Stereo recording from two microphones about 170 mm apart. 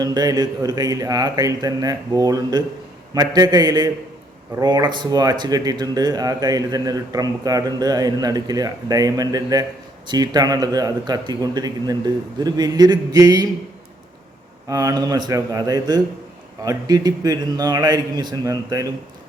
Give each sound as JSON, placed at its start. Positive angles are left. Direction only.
{"t": 0.0, "sound": "speech", "side_deg": -25}
{"t": 14.7, "sound": "speech", "side_deg": -20}